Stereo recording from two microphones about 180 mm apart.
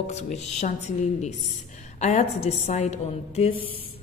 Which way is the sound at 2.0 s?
40° left (ahead or behind).